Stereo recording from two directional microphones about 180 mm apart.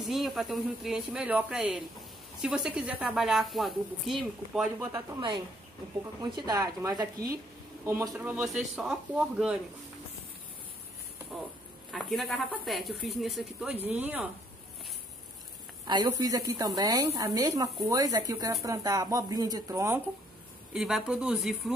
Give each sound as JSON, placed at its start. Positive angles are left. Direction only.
{"t": 0.0, "sound": "speech", "side_deg": 0}
{"t": 4.7, "sound": "a man's voice", "side_deg": -25}
{"t": 8.1, "sound": "speech", "side_deg": -5}
{"t": 11.9, "sound": "speech", "side_deg": 0}
{"t": 15.9, "sound": "speech", "side_deg": -25}
{"t": 20.7, "sound": "speech", "side_deg": -5}